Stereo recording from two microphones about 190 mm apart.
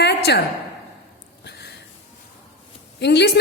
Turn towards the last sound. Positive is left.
turn(degrees=60)  # may be behind; listen again after turning